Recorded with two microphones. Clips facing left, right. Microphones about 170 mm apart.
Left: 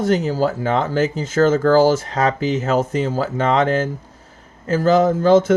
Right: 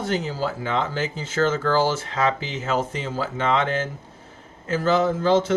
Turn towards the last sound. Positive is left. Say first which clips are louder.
# left 6 dB
turn(degrees=45)  # may be behind; listen again after turning